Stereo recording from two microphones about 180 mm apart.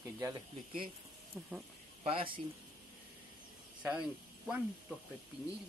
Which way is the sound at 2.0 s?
30° right (ahead or behind).